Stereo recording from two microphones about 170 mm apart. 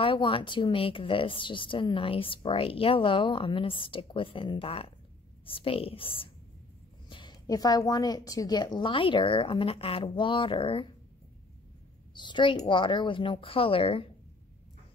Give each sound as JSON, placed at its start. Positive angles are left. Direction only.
{"t": 0.0, "sound": "a woman's voice", "side_deg": 30}
{"t": 12.1, "sound": "a woman's voice", "side_deg": 25}